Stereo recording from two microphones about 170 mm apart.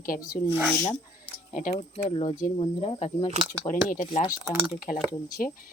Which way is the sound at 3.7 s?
50° left (ahead or behind).